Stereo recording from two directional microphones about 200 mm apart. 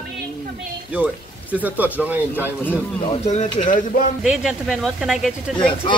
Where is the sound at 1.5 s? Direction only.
10° right (ahead or behind).